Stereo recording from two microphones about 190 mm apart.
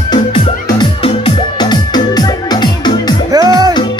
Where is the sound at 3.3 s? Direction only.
20° right (ahead or behind).